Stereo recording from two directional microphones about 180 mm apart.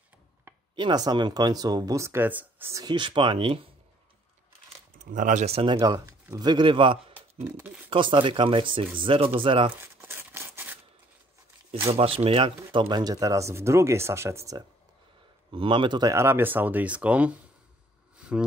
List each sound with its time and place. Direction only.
0.7 s speech: 25° right (ahead or behind)
4.9 s speech: 45° right (ahead or behind)
5.8 s a man's voice: 20° right (ahead or behind)
7.5 s speech: 10° right (ahead or behind)
7.9 s speech: 25° right (ahead or behind)
9.8 s a sound: 15° right (ahead or behind)
11.9 s speech: 35° right (ahead or behind); by 14.6 s 15° right (ahead or behind)
15.5 s speech: 30° right (ahead or behind); by 17.4 s 5° right (ahead or behind)
18.1 s a sound: 5° right (ahead or behind)